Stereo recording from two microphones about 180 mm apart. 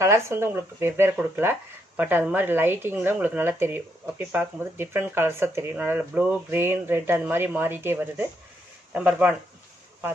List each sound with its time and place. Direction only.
0.0 s speech: 15° right (ahead or behind)